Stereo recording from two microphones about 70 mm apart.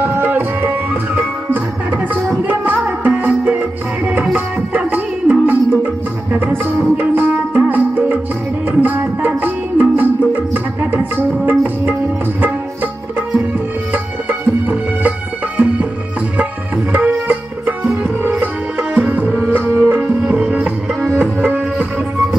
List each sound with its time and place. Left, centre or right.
0.0 s music: right
6.4 s tabla: right
7.6 s music: right
10.5 s tabla: right
14.7 s music: right
19.5 s music: right
20.0 s music: centre